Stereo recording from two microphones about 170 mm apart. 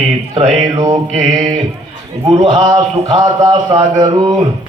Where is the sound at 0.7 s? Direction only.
25° right (ahead or behind).